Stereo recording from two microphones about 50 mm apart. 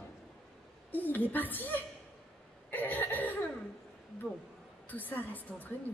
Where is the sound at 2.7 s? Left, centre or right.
Left.